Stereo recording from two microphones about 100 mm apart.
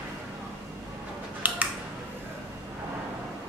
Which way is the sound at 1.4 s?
15° right (ahead or behind).